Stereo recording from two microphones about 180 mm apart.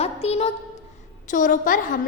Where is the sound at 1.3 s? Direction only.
45° left (ahead or behind).